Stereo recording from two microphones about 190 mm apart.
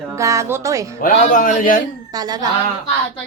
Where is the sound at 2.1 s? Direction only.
20° right (ahead or behind).